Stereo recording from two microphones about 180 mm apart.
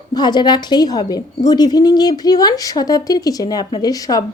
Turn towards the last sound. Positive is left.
turn(degrees=20)  # may be behind; listen again after turning